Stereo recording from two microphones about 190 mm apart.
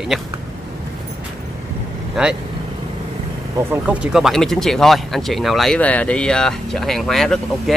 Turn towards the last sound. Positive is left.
turn(degrees=0)  # may be behind; listen again after turning